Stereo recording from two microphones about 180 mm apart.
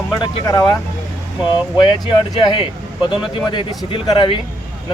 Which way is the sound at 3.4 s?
20° left (ahead or behind).